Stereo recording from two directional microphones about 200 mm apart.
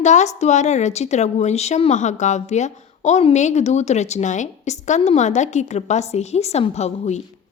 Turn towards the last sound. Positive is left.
turn(degrees=35)  # may be behind; listen again after turning